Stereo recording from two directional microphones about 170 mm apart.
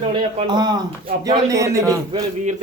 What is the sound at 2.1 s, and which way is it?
Speech, 45° right (ahead or behind).